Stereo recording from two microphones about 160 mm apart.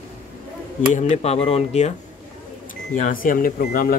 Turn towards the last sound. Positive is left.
turn(degrees=65)  # may be behind; listen again after turning